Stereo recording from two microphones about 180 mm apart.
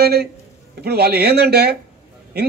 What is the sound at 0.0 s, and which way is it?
A man's voice, 60° right (ahead or behind).